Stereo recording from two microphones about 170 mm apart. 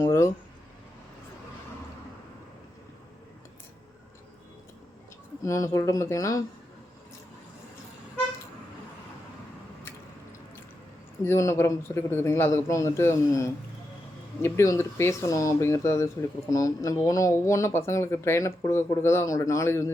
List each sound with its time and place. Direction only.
0.0 s speech: 20° left (ahead or behind)
5.5 s speech: 20° left (ahead or behind)
11.2 s speech: 15° left (ahead or behind)